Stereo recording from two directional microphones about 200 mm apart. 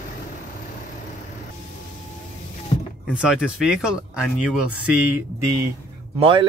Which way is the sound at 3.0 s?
5° right (ahead or behind).